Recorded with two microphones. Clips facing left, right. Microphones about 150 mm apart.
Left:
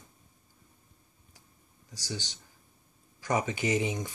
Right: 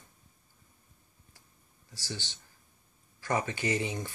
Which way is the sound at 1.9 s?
15° left (ahead or behind).